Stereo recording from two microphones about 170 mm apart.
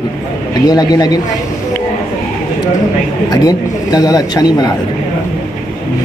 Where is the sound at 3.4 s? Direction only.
20° left (ahead or behind).